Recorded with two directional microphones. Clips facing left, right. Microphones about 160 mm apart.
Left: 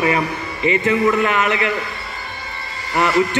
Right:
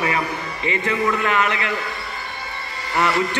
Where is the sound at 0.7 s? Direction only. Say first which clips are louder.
Left 5 dB; 20° left (ahead or behind).